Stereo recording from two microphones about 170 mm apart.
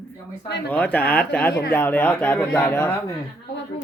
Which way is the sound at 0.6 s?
10° left (ahead or behind).